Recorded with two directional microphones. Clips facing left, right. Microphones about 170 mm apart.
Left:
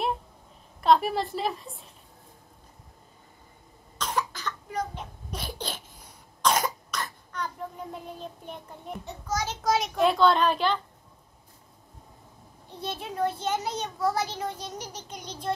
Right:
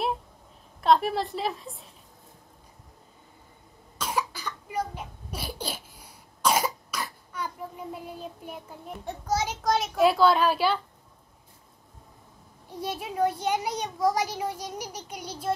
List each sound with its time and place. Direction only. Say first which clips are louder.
0.7 s a child's voice: even; centre (ahead or behind)
4.0 s cough: even; 10° right (ahead or behind)
9.6 s a child's voice: even; centre (ahead or behind)
12.6 s a child's voice: right 2 dB; 10° right (ahead or behind)